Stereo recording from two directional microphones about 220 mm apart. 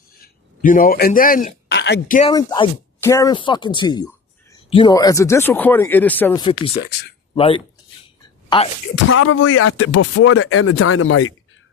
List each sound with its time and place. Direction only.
0.2 s a man's voice: 40° left (ahead or behind)
2.2 s speech: 20° left (ahead or behind)
6.4 s speech: 25° left (ahead or behind)
9.0 s speech: 75° left (ahead or behind)